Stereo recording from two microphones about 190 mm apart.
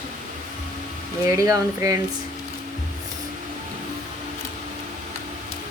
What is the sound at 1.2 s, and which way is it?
Speech, 15° right (ahead or behind).